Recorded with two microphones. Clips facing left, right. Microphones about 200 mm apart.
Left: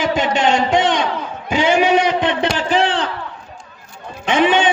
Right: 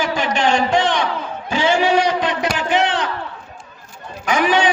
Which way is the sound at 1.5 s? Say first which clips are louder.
Left 2 dB; 20° left (ahead or behind).